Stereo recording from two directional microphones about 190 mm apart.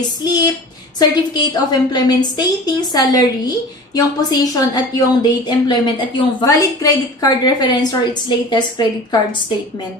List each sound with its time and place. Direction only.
0.2 s a woman's voice: 20° left (ahead or behind)